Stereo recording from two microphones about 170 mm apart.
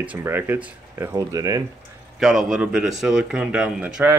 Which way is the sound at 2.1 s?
Centre (ahead or behind).